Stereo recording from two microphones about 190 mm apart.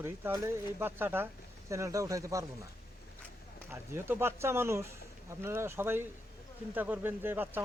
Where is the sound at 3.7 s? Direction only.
15° right (ahead or behind).